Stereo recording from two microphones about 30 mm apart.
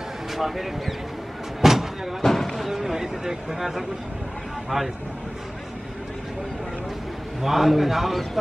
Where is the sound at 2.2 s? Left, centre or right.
Centre.